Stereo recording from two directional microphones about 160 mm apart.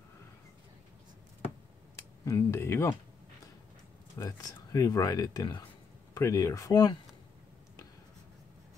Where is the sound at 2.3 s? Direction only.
15° left (ahead or behind).